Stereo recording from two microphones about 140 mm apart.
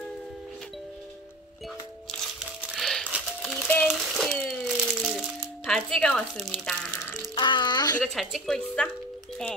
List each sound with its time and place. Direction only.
2.6 s music: centre (ahead or behind)
3.4 s a sound: 10° left (ahead or behind)
4.5 s music: centre (ahead or behind)
7.3 s a child's voice: 35° left (ahead or behind)
8.0 s a woman's voice: centre (ahead or behind)